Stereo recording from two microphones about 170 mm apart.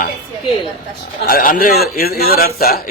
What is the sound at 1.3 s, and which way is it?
A man's voice, 60° left (ahead or behind).